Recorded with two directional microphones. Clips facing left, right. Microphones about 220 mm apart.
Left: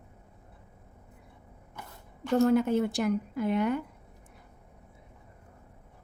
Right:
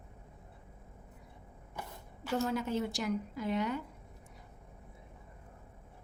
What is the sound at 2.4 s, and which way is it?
A woman's voice, 55° left (ahead or behind).